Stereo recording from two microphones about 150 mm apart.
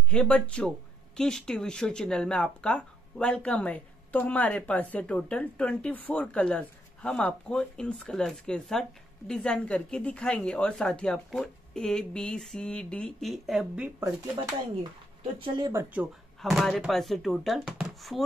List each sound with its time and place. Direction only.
0.1 s a woman's voice: 5° left (ahead or behind)
15.3 s speech: 35° right (ahead or behind)
15.7 s speech: 15° right (ahead or behind)
16.3 s a woman's voice: centre (ahead or behind)